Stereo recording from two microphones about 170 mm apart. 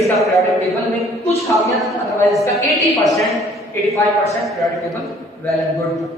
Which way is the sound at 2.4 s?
20° left (ahead or behind).